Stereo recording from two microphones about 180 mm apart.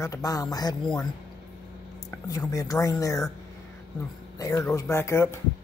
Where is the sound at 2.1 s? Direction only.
15° left (ahead or behind).